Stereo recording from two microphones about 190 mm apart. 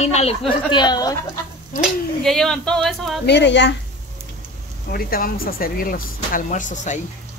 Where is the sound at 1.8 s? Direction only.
Centre (ahead or behind).